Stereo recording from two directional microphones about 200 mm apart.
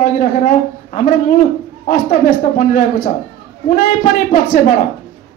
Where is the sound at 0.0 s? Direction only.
40° left (ahead or behind).